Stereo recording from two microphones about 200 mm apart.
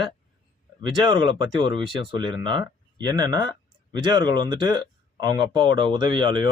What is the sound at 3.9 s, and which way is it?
Speech, 20° right (ahead or behind).